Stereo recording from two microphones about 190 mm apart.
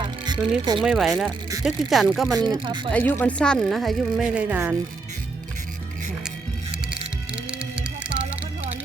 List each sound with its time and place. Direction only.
0.0 s music: 20° right (ahead or behind)
0.8 s speech: centre (ahead or behind)
2.5 s speech: 25° right (ahead or behind)
2.9 s speech: 10° left (ahead or behind); by 4.8 s 10° right (ahead or behind)
6.2 s music: 5° right (ahead or behind)